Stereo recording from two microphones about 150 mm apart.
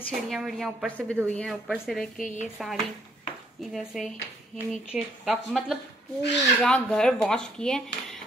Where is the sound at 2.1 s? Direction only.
60° left (ahead or behind).